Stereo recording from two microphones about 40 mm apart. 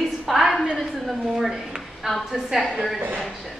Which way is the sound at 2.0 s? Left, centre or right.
Centre.